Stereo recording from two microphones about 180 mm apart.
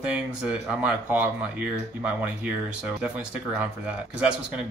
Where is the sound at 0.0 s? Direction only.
5° right (ahead or behind).